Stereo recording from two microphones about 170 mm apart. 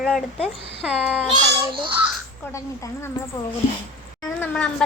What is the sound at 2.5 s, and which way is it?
Speech, 20° left (ahead or behind).